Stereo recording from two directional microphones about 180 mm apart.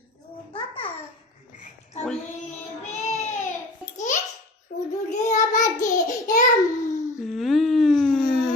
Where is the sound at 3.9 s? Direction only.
45° left (ahead or behind).